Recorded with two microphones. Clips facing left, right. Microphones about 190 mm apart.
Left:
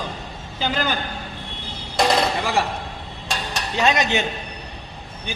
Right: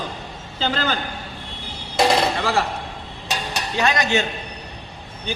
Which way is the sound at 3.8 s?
20° left (ahead or behind).